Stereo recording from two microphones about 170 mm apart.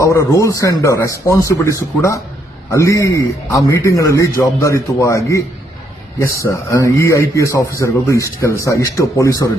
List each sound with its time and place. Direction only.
0.0 s speech: 15° left (ahead or behind)